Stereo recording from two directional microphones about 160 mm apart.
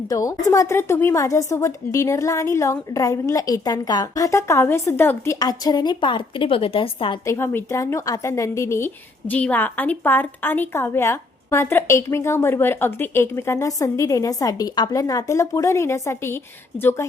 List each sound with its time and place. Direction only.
0.1 s a woman's voice: 20° left (ahead or behind)
7.3 s speech: 15° left (ahead or behind)